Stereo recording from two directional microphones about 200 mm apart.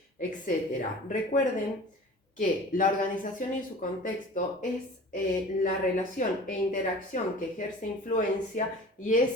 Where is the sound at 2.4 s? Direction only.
40° left (ahead or behind).